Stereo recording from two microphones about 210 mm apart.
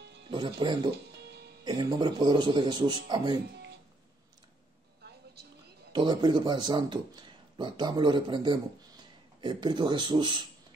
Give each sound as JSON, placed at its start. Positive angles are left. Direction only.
{"t": 0.3, "sound": "a man's voice", "side_deg": -20}
{"t": 0.9, "sound": "music", "side_deg": -55}
{"t": 1.6, "sound": "a man's voice", "side_deg": -20}
{"t": 5.9, "sound": "speech", "side_deg": -20}